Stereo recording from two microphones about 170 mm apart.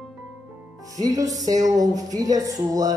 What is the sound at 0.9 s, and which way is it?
Music, 20° right (ahead or behind).